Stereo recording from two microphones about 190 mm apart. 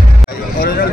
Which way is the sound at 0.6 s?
45° left (ahead or behind).